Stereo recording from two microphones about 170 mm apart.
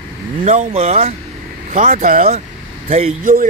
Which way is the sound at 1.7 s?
50° right (ahead or behind).